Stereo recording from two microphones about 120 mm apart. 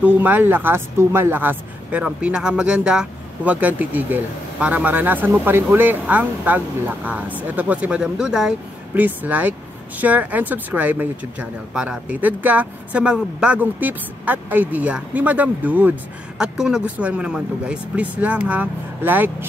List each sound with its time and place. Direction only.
0.0 s speech: 15° right (ahead or behind)